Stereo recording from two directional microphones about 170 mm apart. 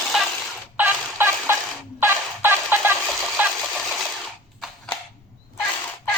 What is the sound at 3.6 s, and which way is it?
Sewing machine, centre (ahead or behind).